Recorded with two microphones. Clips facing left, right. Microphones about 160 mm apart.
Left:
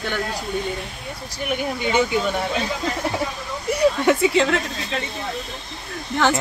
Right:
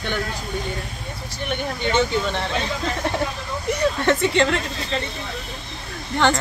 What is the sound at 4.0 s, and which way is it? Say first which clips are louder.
Speech: left 1 dB; 5° left (ahead or behind).